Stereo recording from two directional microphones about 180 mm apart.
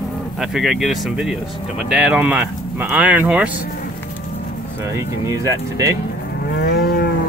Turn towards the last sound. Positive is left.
turn(degrees=60)  # may be behind; listen again after turning